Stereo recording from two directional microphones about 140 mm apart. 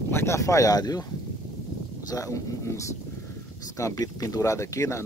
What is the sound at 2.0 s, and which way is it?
Speech, 25° left (ahead or behind).